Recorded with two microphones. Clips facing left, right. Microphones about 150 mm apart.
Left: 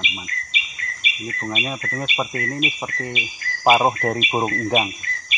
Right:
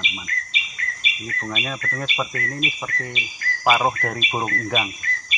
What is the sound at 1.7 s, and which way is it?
Speech, 20° left (ahead or behind).